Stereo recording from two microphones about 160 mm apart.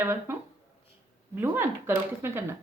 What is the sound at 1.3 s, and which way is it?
Speech, 10° right (ahead or behind).